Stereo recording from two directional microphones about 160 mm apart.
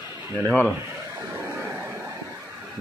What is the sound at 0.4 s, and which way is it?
Speech, 10° right (ahead or behind).